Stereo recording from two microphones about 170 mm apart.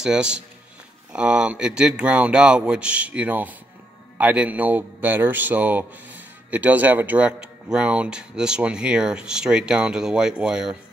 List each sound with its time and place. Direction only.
0.0 s a man's voice: 5° right (ahead or behind)